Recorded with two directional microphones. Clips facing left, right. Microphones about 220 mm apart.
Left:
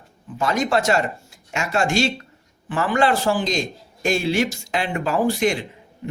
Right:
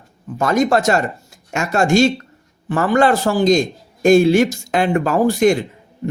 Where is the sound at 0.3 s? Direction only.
45° right (ahead or behind).